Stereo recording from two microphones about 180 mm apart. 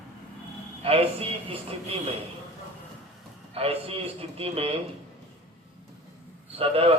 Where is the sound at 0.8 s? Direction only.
35° right (ahead or behind).